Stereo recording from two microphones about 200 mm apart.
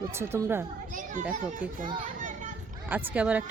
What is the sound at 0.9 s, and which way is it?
Speech, 40° right (ahead or behind).